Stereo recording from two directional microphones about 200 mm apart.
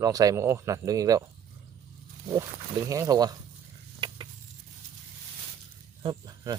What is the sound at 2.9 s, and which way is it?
Speech, 20° right (ahead or behind).